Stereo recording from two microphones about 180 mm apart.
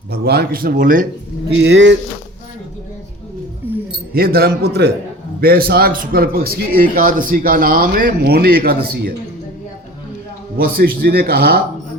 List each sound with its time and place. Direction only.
0.1 s a man's voice: 65° right (ahead or behind)
1.5 s speech: 70° right (ahead or behind)
3.6 s music: 10° right (ahead or behind)
4.1 s a man's voice: 60° right (ahead or behind)
10.6 s a man's voice: 55° right (ahead or behind)